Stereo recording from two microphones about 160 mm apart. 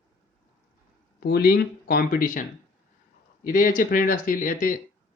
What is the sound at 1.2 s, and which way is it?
Speech, 75° left (ahead or behind).